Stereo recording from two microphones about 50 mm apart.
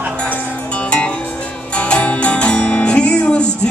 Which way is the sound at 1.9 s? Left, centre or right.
Left.